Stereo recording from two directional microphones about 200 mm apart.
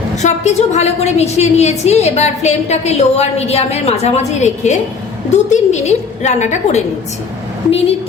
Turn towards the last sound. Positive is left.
turn(degrees=30)  # may be behind; listen again after turning